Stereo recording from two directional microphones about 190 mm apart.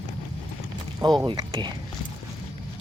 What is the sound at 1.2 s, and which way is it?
Speech, 20° right (ahead or behind).